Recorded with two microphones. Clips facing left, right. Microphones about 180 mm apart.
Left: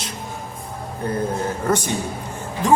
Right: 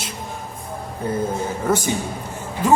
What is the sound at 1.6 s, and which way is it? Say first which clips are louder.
Speech: right 1 dB; 5° right (ahead or behind).